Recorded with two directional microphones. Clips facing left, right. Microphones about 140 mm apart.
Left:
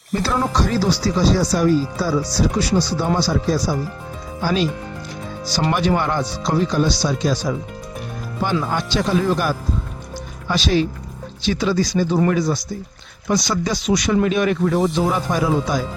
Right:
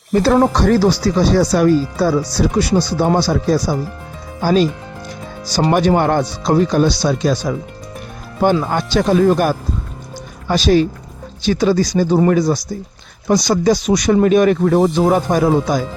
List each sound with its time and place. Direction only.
0.1 s speech: 50° right (ahead or behind)
4.4 s speech: 45° right (ahead or behind)
8.7 s speech: 50° right (ahead or behind)